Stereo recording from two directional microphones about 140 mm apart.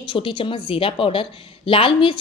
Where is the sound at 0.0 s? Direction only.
35° left (ahead or behind).